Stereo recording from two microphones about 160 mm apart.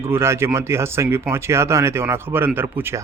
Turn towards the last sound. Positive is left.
turn(degrees=-15)  # may be behind; listen again after turning